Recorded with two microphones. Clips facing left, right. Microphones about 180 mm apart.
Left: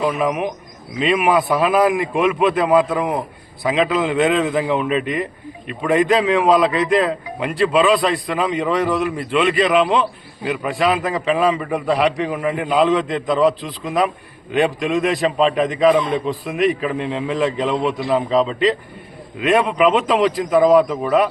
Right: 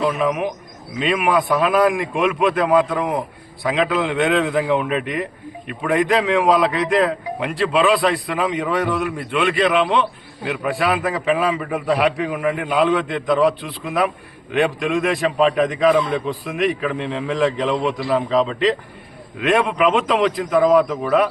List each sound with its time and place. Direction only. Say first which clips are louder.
0.0 s a man's voice: even; 5° left (ahead or behind)
15.9 s a man's voice: left 2 dB; 20° left (ahead or behind)
16.1 s a man's voice: left 2 dB; centre (ahead or behind)